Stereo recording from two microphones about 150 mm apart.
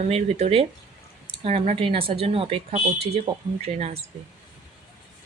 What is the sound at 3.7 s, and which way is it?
Speech, 45° right (ahead or behind).